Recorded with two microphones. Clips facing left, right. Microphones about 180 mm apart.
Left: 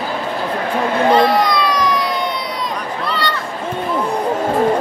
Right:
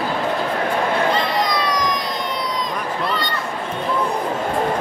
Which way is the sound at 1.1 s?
65° left (ahead or behind).